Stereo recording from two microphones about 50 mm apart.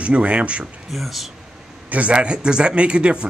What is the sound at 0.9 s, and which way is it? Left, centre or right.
Speech, centre.